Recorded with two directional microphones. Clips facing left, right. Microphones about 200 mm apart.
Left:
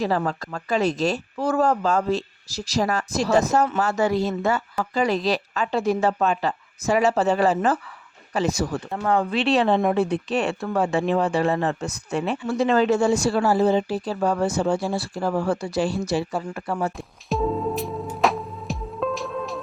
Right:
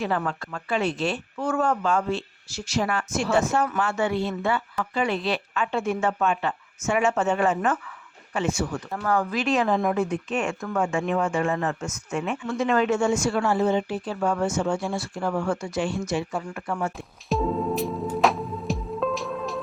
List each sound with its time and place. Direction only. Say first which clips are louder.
0.0 s a woman's voice: left 3 dB; 35° left (ahead or behind)
8.9 s a woman's voice: left 3 dB; 20° left (ahead or behind)
17.2 s music: left 1 dB; centre (ahead or behind)